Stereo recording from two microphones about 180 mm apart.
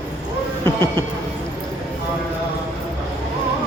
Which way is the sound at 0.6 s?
20° right (ahead or behind).